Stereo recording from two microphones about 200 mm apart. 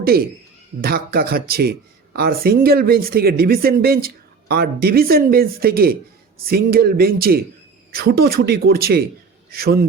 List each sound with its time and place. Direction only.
0.8 s speech: 50° right (ahead or behind)